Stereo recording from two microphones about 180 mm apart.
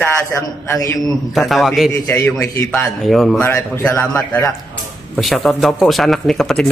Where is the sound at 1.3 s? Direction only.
Centre (ahead or behind).